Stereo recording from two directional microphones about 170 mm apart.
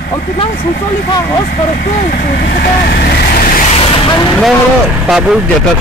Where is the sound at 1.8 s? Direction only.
55° left (ahead or behind).